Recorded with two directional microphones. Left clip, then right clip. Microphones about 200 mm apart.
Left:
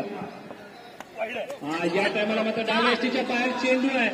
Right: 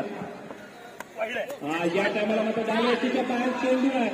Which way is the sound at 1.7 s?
45° left (ahead or behind).